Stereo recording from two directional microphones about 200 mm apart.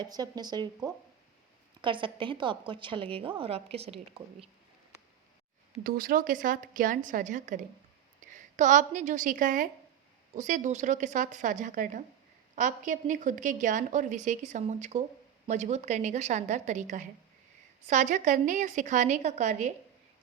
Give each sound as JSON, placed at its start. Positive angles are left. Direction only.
{"t": 0.0, "sound": "a woman's voice", "side_deg": -20}
{"t": 5.8, "sound": "a woman's voice", "side_deg": -45}